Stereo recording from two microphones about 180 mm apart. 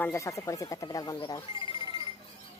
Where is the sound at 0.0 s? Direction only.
15° left (ahead or behind).